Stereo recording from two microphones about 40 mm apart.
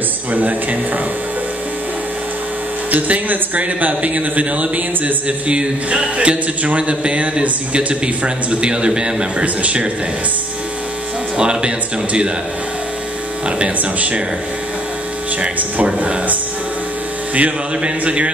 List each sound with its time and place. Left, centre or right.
0.3 s speech: right
2.9 s a man's voice: right
11.3 s a man's voice: right
13.7 s speech: right
15.4 s speech: right